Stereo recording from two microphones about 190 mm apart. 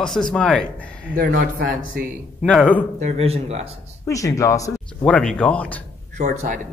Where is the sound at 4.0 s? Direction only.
15° left (ahead or behind).